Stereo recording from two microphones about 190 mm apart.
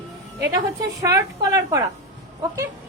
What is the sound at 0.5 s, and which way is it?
A woman's voice, 20° right (ahead or behind).